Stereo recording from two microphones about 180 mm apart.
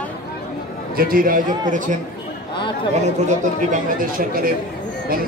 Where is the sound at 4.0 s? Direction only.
55° right (ahead or behind).